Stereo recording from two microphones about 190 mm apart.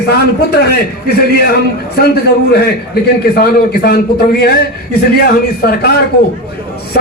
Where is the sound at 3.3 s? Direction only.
55° left (ahead or behind).